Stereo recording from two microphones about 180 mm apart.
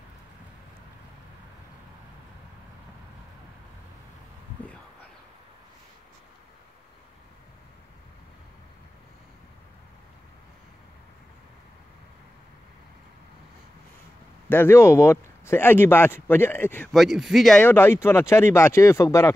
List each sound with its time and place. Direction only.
14.5 s speech: 15° left (ahead or behind)
17.6 s speech: 10° left (ahead or behind)